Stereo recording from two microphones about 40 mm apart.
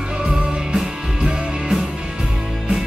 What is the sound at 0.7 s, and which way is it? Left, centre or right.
Music, centre.